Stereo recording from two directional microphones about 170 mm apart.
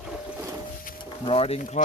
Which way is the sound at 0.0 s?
5° right (ahead or behind).